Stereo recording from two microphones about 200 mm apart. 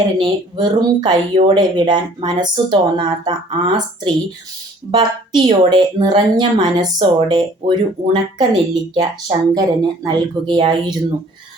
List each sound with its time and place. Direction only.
0.2 s speech: 25° right (ahead or behind)